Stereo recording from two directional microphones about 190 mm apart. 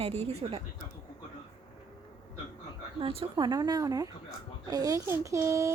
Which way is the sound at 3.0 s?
25° right (ahead or behind).